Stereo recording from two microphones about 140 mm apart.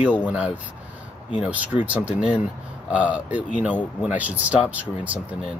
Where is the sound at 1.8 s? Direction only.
10° right (ahead or behind).